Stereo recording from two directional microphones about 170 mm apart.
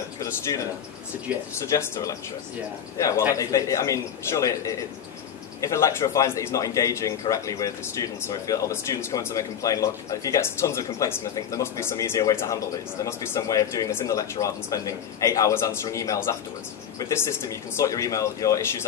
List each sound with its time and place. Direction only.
1.5 s a man's voice: 15° left (ahead or behind)